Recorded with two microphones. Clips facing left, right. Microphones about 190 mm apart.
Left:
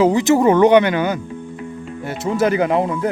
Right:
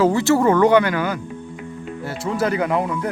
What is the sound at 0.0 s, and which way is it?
Speech, 15° left (ahead or behind).